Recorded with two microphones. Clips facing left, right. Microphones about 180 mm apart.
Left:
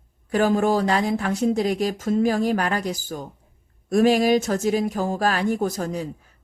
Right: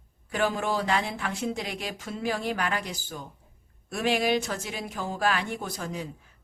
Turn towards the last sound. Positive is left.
turn(degrees=40)  # may be behind; listen again after turning